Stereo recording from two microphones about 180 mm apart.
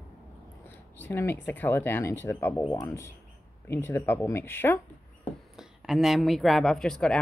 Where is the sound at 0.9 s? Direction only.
10° left (ahead or behind).